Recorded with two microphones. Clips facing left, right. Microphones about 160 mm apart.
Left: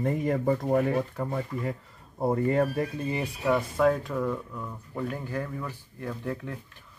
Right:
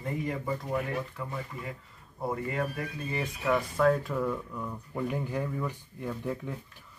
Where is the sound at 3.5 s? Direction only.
5° left (ahead or behind).